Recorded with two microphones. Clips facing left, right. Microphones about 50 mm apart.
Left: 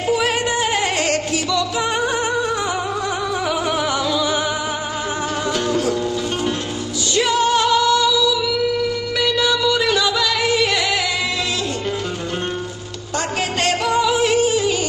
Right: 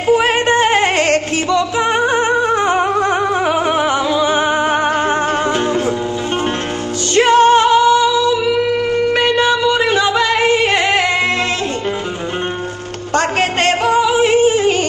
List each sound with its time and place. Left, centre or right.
0.0 s music: right
5.7 s music: right
7.2 s music: right
13.1 s music: right
13.8 s music: right